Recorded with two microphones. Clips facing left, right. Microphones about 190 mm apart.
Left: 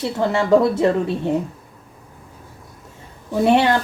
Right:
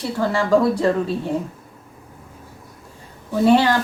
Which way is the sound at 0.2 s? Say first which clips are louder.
Left 2 dB; 20° left (ahead or behind).